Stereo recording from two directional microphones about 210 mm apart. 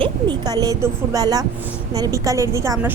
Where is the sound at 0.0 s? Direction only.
20° right (ahead or behind).